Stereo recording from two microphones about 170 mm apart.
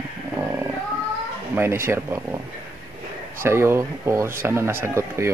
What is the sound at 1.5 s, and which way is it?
Speech, 15° right (ahead or behind).